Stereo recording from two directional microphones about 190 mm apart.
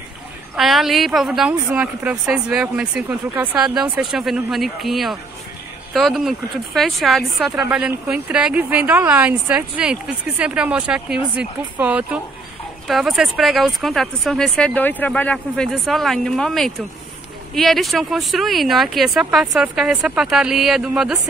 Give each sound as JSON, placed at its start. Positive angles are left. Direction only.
{"t": 0.6, "sound": "a woman's voice", "side_deg": 0}